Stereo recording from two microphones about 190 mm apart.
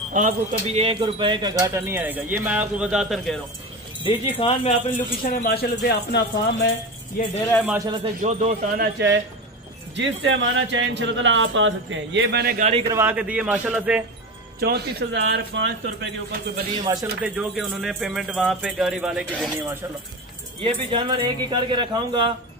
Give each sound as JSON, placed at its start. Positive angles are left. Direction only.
{"t": 0.1, "sound": "speech", "side_deg": -40}
{"t": 4.0, "sound": "speech", "side_deg": 30}
{"t": 7.6, "sound": "a man's voice", "side_deg": -15}
{"t": 8.2, "sound": "speech", "side_deg": -35}
{"t": 9.9, "sound": "speech", "side_deg": -75}
{"t": 12.5, "sound": "speech", "side_deg": -35}
{"t": 12.8, "sound": "speech", "side_deg": -15}
{"t": 14.6, "sound": "speech", "side_deg": -60}
{"t": 16.7, "sound": "a man's voice", "side_deg": -20}
{"t": 17.2, "sound": "speech", "side_deg": -5}
{"t": 20.6, "sound": "a man's voice", "side_deg": -25}